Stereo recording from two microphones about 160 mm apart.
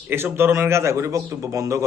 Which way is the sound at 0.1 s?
15° right (ahead or behind).